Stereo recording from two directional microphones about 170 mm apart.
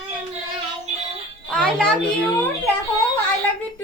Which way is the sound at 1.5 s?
5° left (ahead or behind).